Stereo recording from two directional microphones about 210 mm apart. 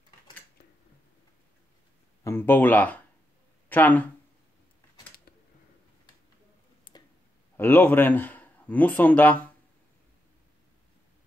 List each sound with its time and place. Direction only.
2.2 s speech: 10° left (ahead or behind)
6.9 s tick: 20° left (ahead or behind)
7.5 s a man's voice: 10° left (ahead or behind)